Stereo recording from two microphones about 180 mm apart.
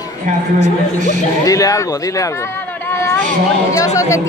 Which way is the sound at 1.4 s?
20° left (ahead or behind).